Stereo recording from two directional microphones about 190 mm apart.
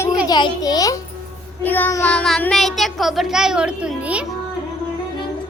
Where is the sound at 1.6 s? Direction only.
10° left (ahead or behind); by 4.3 s 5° right (ahead or behind).